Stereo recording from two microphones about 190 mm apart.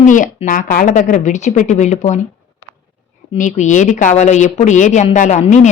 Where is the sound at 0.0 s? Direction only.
40° left (ahead or behind).